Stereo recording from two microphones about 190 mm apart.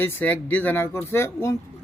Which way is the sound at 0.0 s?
10° left (ahead or behind).